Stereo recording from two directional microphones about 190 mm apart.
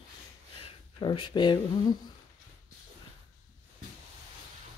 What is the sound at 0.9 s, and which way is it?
Speech, 25° left (ahead or behind).